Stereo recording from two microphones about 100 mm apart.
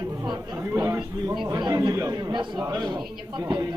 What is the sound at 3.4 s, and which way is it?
Speech, 35° right (ahead or behind).